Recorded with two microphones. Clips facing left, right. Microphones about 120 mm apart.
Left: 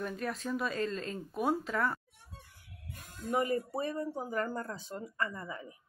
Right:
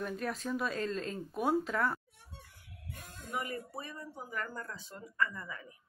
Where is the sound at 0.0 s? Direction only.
Centre (ahead or behind).